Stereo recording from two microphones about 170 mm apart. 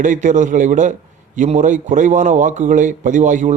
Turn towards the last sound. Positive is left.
turn(degrees=-45)  # may be behind; listen again after turning